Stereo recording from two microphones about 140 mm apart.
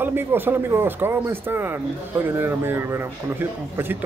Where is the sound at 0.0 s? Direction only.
15° right (ahead or behind).